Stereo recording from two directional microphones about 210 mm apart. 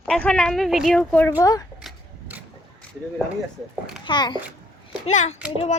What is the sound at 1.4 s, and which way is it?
Speech, 15° left (ahead or behind).